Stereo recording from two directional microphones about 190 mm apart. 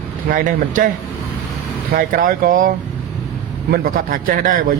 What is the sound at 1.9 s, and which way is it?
Speech, 50° right (ahead or behind).